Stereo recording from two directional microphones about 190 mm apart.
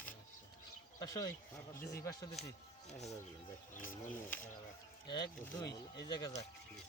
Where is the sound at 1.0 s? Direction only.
20° left (ahead or behind).